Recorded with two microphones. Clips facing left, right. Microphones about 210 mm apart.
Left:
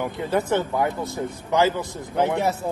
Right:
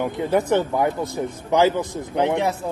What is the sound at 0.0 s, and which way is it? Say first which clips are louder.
Speech: right 3 dB; 20° right (ahead or behind).